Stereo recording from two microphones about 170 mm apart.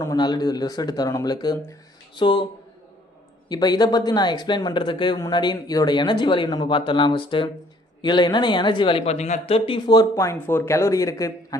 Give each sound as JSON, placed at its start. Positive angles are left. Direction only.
{"t": 0.0, "sound": "speech", "side_deg": 20}
{"t": 3.5, "sound": "speech", "side_deg": 25}